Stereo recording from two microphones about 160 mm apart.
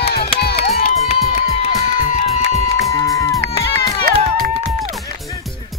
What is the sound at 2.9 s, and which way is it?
Music, 20° left (ahead or behind).